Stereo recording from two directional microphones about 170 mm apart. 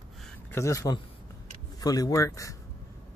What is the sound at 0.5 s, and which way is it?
Speech, 15° left (ahead or behind).